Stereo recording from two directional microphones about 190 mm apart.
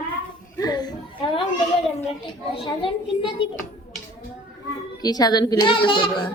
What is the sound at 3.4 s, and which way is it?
Speech, 25° left (ahead or behind).